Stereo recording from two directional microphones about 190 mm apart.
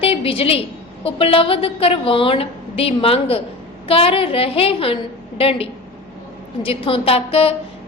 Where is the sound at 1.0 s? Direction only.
30° left (ahead or behind).